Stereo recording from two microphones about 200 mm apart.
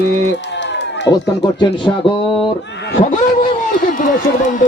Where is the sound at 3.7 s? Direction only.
45° left (ahead or behind).